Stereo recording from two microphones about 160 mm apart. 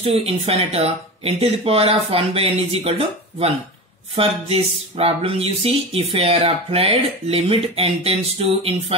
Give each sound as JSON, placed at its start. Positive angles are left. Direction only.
{"t": 0.0, "sound": "speech", "side_deg": -40}